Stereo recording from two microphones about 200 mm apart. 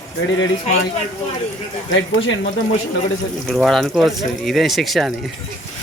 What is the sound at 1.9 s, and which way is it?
Speech, 70° left (ahead or behind).